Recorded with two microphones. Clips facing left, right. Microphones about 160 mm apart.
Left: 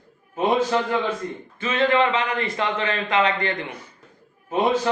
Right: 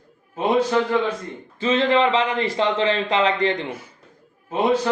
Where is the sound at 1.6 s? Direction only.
30° right (ahead or behind).